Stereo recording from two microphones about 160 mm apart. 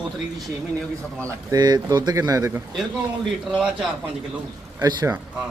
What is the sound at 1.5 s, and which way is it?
Speech, 25° right (ahead or behind).